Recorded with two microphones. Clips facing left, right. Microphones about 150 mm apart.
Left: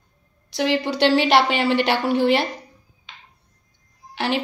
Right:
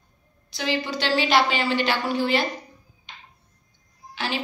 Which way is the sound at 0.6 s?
70° left (ahead or behind).